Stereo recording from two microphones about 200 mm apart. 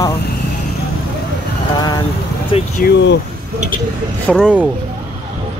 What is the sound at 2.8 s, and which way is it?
Speech, 60° left (ahead or behind).